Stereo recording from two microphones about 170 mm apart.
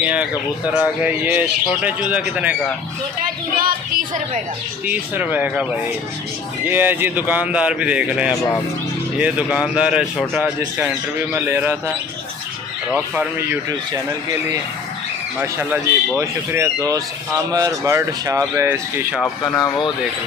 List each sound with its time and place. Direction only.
0.0 s a man's voice: 10° right (ahead or behind)
3.5 s a woman's voice: 55° right (ahead or behind)
4.8 s a man's voice: 10° right (ahead or behind)
12.9 s a man's voice: 10° right (ahead or behind)
15.4 s a man's voice: 15° right (ahead or behind)
19.2 s speech: 15° left (ahead or behind)